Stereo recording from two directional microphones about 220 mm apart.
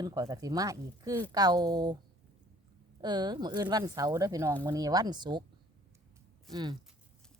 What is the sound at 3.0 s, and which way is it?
Speech, 20° right (ahead or behind).